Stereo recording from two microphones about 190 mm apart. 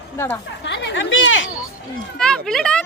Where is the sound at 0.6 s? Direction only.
70° left (ahead or behind); by 1.4 s 90° left.